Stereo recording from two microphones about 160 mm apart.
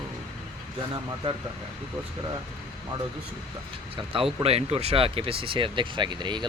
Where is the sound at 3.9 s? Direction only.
35° right (ahead or behind).